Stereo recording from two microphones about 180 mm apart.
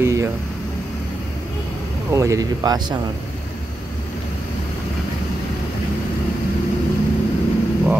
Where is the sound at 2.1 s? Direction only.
15° right (ahead or behind).